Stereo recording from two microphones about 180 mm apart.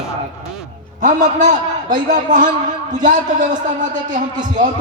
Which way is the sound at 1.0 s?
45° right (ahead or behind).